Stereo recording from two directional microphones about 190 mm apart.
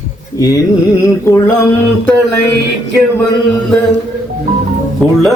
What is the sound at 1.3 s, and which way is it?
Male singing, 15° left (ahead or behind).